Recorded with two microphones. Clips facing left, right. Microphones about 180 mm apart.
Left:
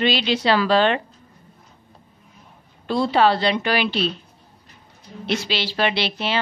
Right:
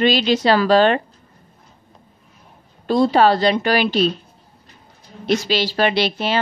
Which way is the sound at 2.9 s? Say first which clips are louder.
Right 4 dB; 45° right (ahead or behind).